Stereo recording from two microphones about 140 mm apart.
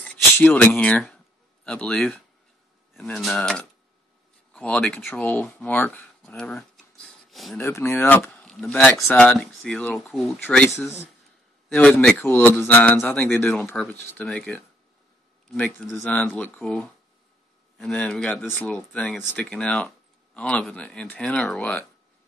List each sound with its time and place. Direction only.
0.0 s a sound: 10° left (ahead or behind)
2.9 s speech: centre (ahead or behind)
7.5 s speech: 15° left (ahead or behind)